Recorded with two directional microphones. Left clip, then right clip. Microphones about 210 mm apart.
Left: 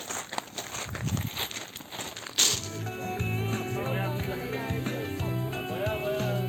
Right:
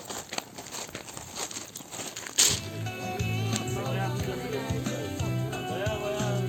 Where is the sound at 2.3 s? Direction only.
5° right (ahead or behind).